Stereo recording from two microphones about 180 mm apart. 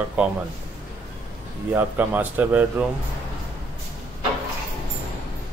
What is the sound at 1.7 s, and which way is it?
Speech, 10° right (ahead or behind).